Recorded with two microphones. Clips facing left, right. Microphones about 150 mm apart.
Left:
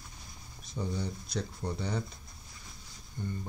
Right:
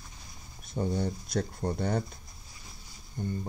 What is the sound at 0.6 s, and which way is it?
Speech, 55° right (ahead or behind).